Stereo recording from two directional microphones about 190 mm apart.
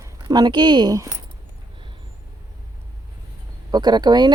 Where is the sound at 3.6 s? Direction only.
20° right (ahead or behind).